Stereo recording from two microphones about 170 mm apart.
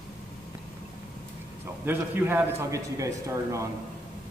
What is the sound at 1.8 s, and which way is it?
A man's voice, 10° right (ahead or behind).